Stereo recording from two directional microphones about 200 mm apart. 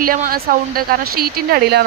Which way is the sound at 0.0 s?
45° right (ahead or behind).